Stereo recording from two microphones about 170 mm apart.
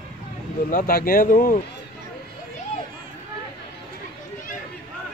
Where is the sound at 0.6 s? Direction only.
55° left (ahead or behind).